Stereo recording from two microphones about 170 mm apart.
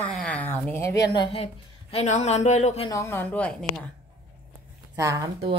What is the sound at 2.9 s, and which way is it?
Speech, 15° left (ahead or behind).